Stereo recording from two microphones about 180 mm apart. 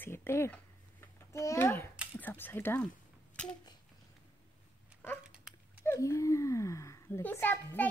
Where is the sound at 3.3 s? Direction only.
5° left (ahead or behind).